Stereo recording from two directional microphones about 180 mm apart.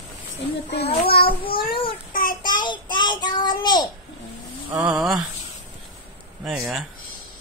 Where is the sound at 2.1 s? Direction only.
50° left (ahead or behind).